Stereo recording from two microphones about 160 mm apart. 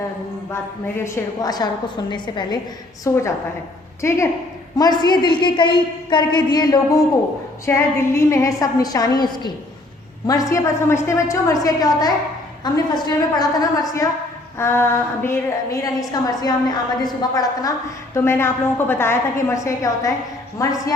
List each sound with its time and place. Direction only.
0.5 s a woman's voice: 15° left (ahead or behind)
3.0 s a woman's voice: 20° left (ahead or behind)
10.5 s a woman's voice: 15° left (ahead or behind)